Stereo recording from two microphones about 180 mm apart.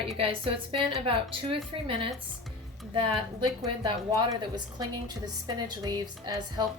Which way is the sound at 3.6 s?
25° right (ahead or behind).